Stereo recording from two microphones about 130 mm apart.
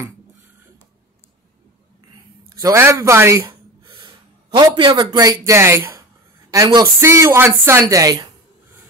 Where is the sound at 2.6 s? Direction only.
25° right (ahead or behind).